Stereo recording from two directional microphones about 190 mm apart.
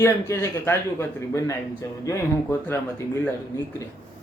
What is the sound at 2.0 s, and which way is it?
Speech, 15° left (ahead or behind).